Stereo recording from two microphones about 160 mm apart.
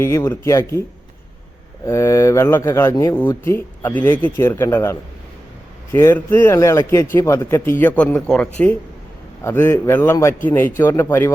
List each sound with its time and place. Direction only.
0.0 s a man's voice: 15° left (ahead or behind)